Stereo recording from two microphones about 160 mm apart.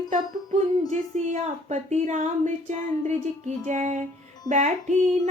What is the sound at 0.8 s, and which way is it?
Speech, 45° right (ahead or behind).